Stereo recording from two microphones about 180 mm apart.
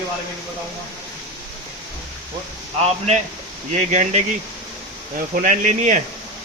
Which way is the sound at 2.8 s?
35° right (ahead or behind).